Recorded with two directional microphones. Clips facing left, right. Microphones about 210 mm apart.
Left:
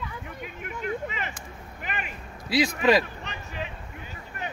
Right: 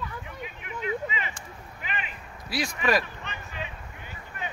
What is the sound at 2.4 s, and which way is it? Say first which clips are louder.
Speech: left 6 dB; 20° left (ahead or behind).